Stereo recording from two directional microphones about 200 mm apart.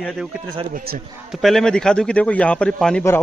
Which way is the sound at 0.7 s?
50° right (ahead or behind).